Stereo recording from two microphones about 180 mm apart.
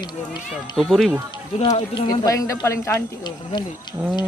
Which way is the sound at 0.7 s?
Centre (ahead or behind).